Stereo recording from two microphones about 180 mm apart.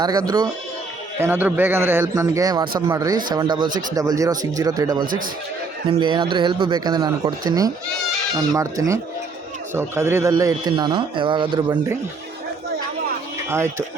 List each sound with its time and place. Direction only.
0.0 s a man's voice: 20° right (ahead or behind)
1.2 s a man's voice: 10° right (ahead or behind)
13.5 s a man's voice: 15° right (ahead or behind)